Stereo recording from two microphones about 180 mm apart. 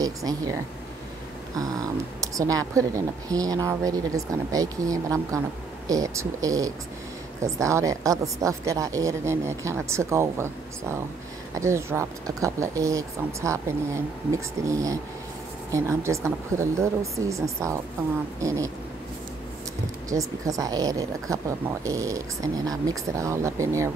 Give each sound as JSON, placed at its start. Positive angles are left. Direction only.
{"t": 0.0, "sound": "a woman's voice", "side_deg": -20}
{"t": 2.3, "sound": "a woman's voice", "side_deg": -20}
{"t": 20.1, "sound": "a woman's voice", "side_deg": -20}